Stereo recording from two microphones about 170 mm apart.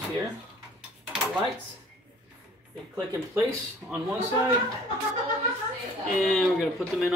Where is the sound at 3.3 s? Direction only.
15° right (ahead or behind).